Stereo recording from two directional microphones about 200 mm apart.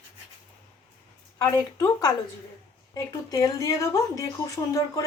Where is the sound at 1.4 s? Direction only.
15° left (ahead or behind).